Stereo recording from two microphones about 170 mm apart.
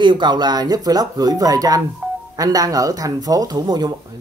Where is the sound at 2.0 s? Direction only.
10° right (ahead or behind).